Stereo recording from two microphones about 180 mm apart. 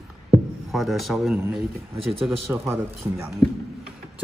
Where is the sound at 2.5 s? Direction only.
15° right (ahead or behind).